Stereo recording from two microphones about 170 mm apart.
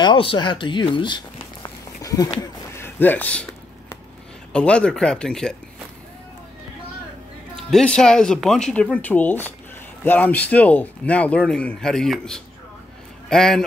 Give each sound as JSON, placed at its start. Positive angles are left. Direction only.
{"t": 0.0, "sound": "speech", "side_deg": 30}
{"t": 4.5, "sound": "speech", "side_deg": 5}
{"t": 7.5, "sound": "speech", "side_deg": 5}